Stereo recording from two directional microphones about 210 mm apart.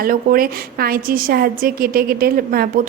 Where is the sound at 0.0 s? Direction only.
45° right (ahead or behind).